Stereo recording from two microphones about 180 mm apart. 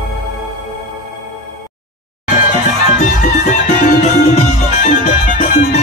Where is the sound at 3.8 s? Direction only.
40° left (ahead or behind).